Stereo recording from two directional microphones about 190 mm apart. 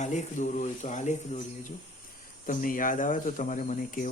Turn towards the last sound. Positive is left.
turn(degrees=45)  # may be behind; listen again after turning